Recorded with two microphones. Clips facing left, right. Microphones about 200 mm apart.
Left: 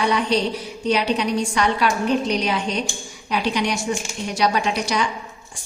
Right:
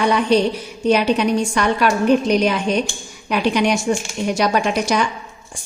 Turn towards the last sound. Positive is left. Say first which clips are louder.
# right 4 dB
turn(degrees=-50)  # may be behind; listen again after turning